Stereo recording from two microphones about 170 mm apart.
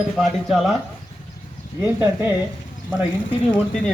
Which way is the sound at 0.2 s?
Centre (ahead or behind).